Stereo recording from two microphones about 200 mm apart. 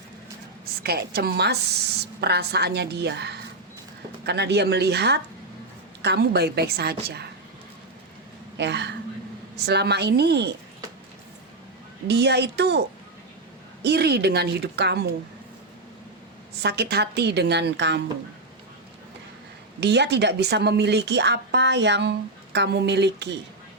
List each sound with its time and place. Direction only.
0.6 s a woman's voice: 50° right (ahead or behind)
8.5 s a woman's voice: 60° right (ahead or behind)
12.0 s speech: 55° right (ahead or behind)
13.8 s speech: 55° right (ahead or behind)
16.6 s speech: 55° right (ahead or behind)
19.8 s speech: 55° right (ahead or behind)